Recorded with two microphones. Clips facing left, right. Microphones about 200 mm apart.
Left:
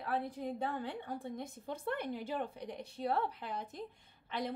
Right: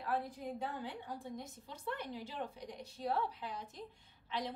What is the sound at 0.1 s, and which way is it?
A woman's voice, 60° left (ahead or behind).